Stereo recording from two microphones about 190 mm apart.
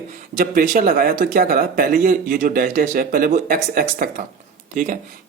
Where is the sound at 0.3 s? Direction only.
45° right (ahead or behind).